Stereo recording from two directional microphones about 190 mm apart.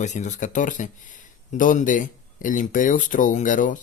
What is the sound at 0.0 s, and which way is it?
Speech, 40° left (ahead or behind).